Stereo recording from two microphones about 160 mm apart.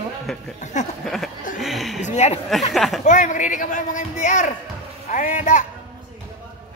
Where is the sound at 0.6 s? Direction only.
45° left (ahead or behind).